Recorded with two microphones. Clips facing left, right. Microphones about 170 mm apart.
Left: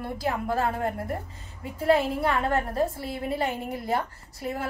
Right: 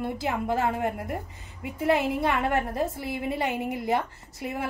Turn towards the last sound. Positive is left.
turn(degrees=-20)  # may be behind; listen again after turning